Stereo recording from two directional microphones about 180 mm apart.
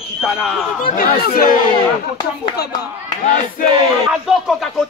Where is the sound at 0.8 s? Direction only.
55° left (ahead or behind).